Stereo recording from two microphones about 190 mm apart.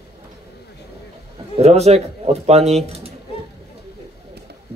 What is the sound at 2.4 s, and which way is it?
Speech, 35° right (ahead or behind).